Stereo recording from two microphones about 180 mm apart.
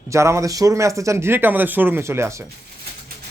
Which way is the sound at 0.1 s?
15° right (ahead or behind).